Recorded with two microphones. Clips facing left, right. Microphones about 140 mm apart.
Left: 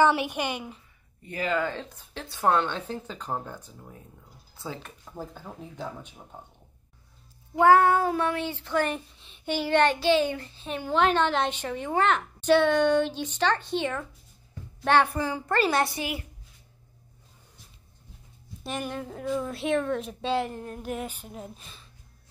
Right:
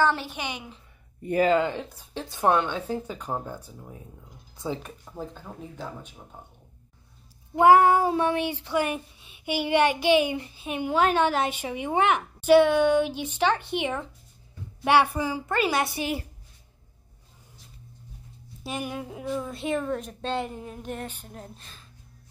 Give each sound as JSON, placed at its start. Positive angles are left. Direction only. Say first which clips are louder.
{"t": 0.0, "sound": "speech", "louder": "left 3 dB", "side_deg": 10}
{"t": 1.5, "sound": "a child's voice", "louder": "right 5 dB", "side_deg": -20}
{"t": 5.1, "sound": "speech", "louder": "right 1 dB", "side_deg": 5}
{"t": 7.5, "sound": "a child's voice", "louder": "right 2 dB", "side_deg": -15}
{"t": 15.1, "sound": "speech", "louder": "even", "side_deg": -10}
{"t": 15.9, "sound": "a child's voice", "louder": "right 3 dB", "side_deg": -25}
{"t": 18.6, "sound": "speech", "louder": "even", "side_deg": -5}